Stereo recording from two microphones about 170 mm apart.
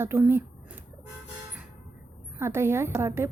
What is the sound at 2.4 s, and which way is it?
Speech, 15° right (ahead or behind).